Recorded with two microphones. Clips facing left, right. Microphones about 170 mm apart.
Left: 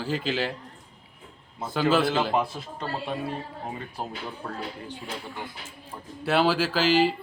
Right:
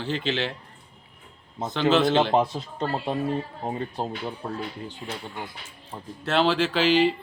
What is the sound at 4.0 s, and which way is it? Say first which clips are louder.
Speech: right 4 dB; 25° right (ahead or behind).